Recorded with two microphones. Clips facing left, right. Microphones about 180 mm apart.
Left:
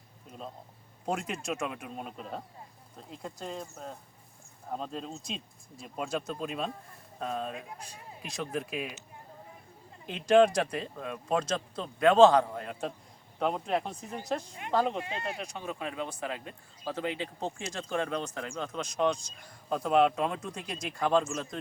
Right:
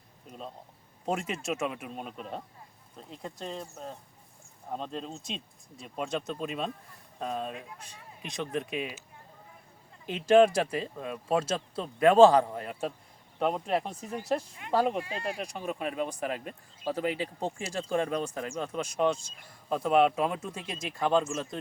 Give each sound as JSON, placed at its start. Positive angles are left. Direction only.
{"t": 0.3, "sound": "speech", "side_deg": 0}
{"t": 10.1, "sound": "speech", "side_deg": -5}
{"t": 15.0, "sound": "speech", "side_deg": 20}
{"t": 15.4, "sound": "speech", "side_deg": -10}